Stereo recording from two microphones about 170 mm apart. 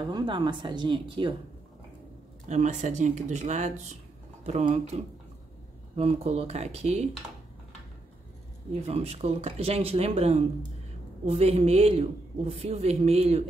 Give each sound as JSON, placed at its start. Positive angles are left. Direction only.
{"t": 0.0, "sound": "speech", "side_deg": -25}
{"t": 2.4, "sound": "a man's voice", "side_deg": -45}
{"t": 5.9, "sound": "a man's voice", "side_deg": -35}
{"t": 8.8, "sound": "a man's voice", "side_deg": -35}